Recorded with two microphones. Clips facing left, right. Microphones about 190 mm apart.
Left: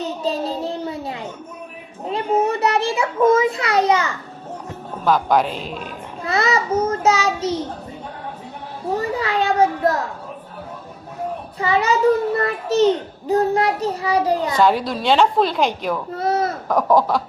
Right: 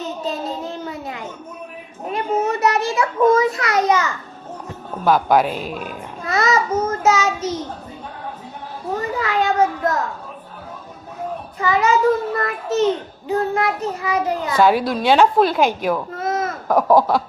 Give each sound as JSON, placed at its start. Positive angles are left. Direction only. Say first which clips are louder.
{"t": 0.3, "sound": "a sound", "louder": "left 4 dB", "side_deg": 35}
{"t": 5.0, "sound": "a woman's voice", "louder": "right 2 dB", "side_deg": -10}
{"t": 6.2, "sound": "child singing", "louder": "right 1 dB", "side_deg": 30}
{"t": 9.0, "sound": "children playing", "louder": "right 1 dB", "side_deg": 30}
{"t": 11.6, "sound": "child singing", "louder": "right 1 dB", "side_deg": 30}
{"t": 12.4, "sound": "a sound", "louder": "left 2 dB", "side_deg": 35}
{"t": 12.8, "sound": "a child's voice", "louder": "left 4 dB", "side_deg": 40}
{"t": 14.6, "sound": "a woman's voice", "louder": "right 4 dB", "side_deg": -5}
{"t": 16.1, "sound": "a sound", "louder": "left 2 dB", "side_deg": 35}
{"t": 16.6, "sound": "a woman's voice", "louder": "right 3 dB", "side_deg": -5}